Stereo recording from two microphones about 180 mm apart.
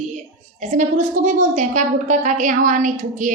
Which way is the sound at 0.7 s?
40° right (ahead or behind).